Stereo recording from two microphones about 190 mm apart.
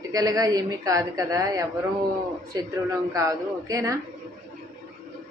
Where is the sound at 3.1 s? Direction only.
15° right (ahead or behind).